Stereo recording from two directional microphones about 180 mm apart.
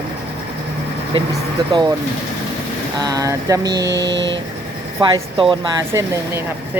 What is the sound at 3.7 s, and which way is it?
Mantra, 70° right (ahead or behind).